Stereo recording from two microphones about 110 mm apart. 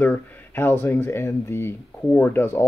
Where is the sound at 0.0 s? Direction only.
20° left (ahead or behind).